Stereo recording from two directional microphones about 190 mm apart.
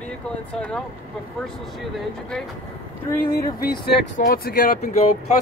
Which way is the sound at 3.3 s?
50° left (ahead or behind).